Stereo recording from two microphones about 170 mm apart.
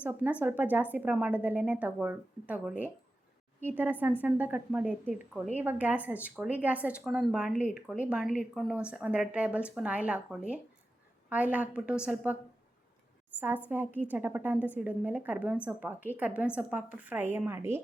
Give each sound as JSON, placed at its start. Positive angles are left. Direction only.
{"t": 0.0, "sound": "a woman's voice", "side_deg": -10}
{"t": 13.7, "sound": "a woman's voice", "side_deg": -10}